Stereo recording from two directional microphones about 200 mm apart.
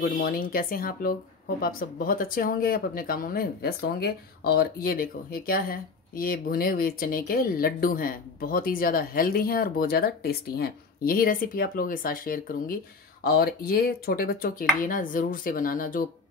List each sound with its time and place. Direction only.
0.0 s speech: 45° left (ahead or behind)